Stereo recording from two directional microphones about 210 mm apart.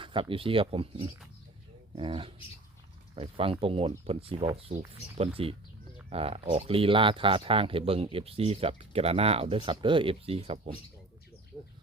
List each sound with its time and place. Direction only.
0.0 s speech: 25° right (ahead or behind)
11.5 s bird: 15° left (ahead or behind)